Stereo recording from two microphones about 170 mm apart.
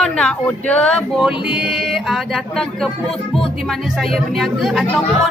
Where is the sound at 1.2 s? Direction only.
5° right (ahead or behind).